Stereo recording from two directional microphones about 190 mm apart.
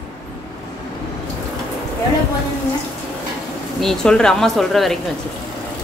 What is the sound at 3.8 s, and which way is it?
Speech, 5° left (ahead or behind).